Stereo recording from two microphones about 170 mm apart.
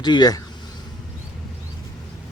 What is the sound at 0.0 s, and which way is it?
Speech, 25° left (ahead or behind).